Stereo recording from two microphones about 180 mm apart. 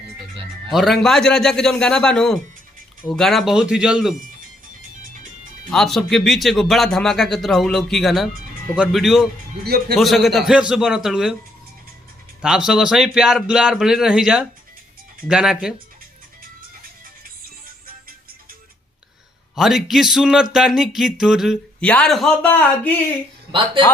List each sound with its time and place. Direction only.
0.7 s speech: centre (ahead or behind)
5.7 s speech: centre (ahead or behind)
12.4 s speech: 5° right (ahead or behind)
19.5 s speech: centre (ahead or behind)
23.5 s speech: 30° right (ahead or behind)